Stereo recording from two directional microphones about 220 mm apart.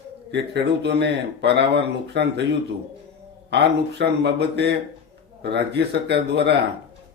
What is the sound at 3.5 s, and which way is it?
Speech, 50° right (ahead or behind).